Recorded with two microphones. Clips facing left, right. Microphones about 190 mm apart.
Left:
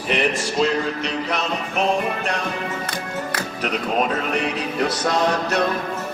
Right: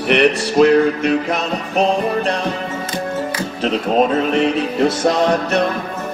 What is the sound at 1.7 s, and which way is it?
Music, 35° right (ahead or behind).